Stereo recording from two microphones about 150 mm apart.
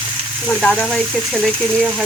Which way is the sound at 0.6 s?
5° left (ahead or behind).